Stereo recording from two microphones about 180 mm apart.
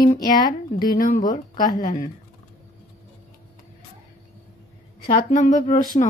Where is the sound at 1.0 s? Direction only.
50° left (ahead or behind).